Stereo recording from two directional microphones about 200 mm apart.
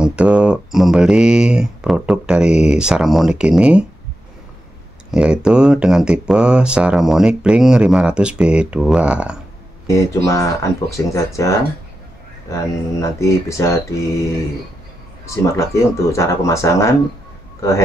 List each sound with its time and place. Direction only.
0.0 s speech: 5° right (ahead or behind)
5.1 s speech: 5° right (ahead or behind)
9.8 s speech: 15° left (ahead or behind)
13.2 s speech: 15° left (ahead or behind)
15.2 s speech: 15° left (ahead or behind)